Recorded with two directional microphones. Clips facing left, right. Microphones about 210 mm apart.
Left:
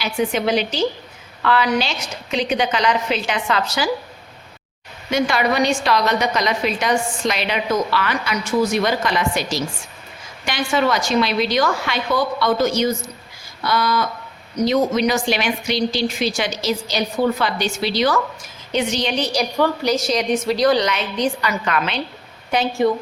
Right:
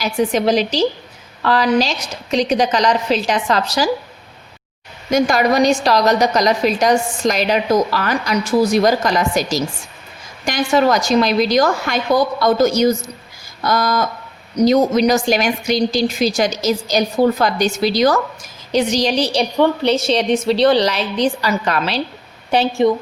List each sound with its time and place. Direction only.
0.0 s a woman's voice: 40° right (ahead or behind)
5.1 s a woman's voice: 40° right (ahead or behind)